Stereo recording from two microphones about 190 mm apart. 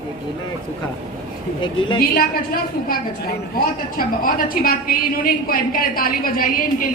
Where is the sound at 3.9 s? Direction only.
50° left (ahead or behind).